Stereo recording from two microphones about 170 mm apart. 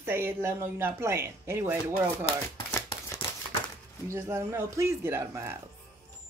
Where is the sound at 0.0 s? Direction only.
15° right (ahead or behind).